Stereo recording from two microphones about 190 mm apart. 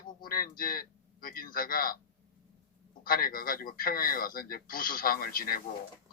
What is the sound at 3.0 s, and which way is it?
Speech, 50° left (ahead or behind).